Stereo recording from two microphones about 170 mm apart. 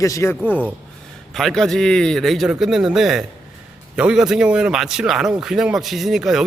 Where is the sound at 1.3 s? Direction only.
Centre (ahead or behind).